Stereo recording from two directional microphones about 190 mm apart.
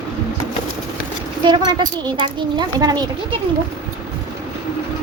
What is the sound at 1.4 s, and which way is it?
Speech, 25° right (ahead or behind).